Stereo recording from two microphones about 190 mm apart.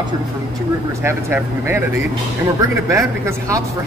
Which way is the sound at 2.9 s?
15° right (ahead or behind).